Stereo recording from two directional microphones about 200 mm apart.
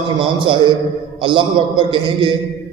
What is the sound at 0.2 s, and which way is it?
A man's voice, 25° right (ahead or behind).